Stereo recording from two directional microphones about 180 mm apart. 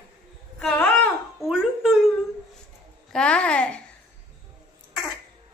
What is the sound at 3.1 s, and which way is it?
Speech, 5° left (ahead or behind).